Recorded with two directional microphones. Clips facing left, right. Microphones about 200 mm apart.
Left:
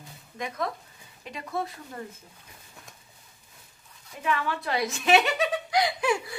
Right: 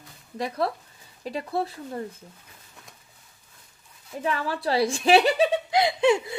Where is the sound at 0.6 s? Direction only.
35° right (ahead or behind).